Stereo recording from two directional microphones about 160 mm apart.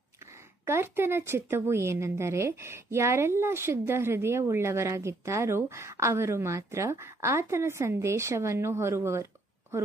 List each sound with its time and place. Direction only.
0.7 s a woman's voice: 15° right (ahead or behind)